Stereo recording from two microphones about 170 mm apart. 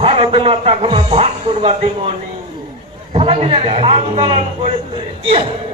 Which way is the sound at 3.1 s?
35° right (ahead or behind).